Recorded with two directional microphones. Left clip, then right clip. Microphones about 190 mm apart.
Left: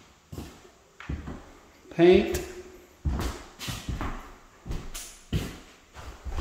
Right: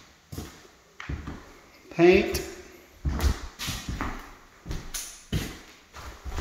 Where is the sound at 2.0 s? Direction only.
10° left (ahead or behind).